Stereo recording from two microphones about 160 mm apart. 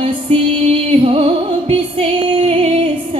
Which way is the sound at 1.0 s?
35° right (ahead or behind).